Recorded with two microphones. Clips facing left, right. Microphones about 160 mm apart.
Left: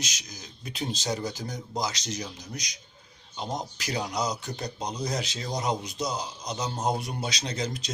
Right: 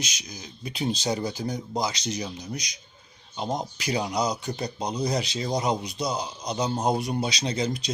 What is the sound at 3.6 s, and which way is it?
Speech, 5° right (ahead or behind).